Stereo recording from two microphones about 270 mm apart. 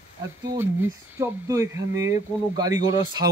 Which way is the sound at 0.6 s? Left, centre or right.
Centre.